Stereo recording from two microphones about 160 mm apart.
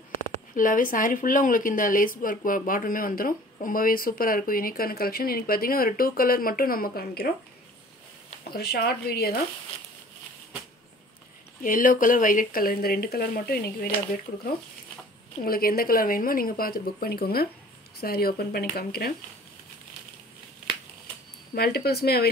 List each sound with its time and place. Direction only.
0.6 s a woman's voice: 55° left (ahead or behind); by 7.3 s 70° left (ahead or behind)
8.5 s speech: 80° left
11.6 s a woman's voice: 55° left (ahead or behind); by 19.1 s 75° left (ahead or behind)
21.5 s speech: 80° left